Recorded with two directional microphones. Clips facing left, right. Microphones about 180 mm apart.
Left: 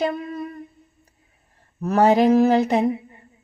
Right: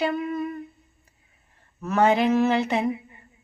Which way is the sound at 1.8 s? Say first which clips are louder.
Left 4 dB; 35° left (ahead or behind).